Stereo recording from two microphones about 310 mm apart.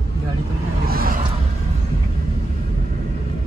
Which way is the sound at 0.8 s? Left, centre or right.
Right.